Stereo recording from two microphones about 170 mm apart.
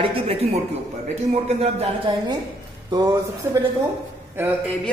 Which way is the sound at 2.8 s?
25° right (ahead or behind).